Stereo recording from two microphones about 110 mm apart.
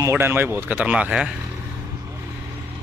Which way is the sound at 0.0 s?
20° right (ahead or behind).